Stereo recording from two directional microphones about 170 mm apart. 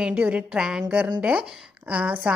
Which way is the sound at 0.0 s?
5° right (ahead or behind).